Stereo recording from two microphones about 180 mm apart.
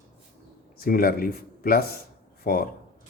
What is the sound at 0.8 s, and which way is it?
Speech, 55° left (ahead or behind).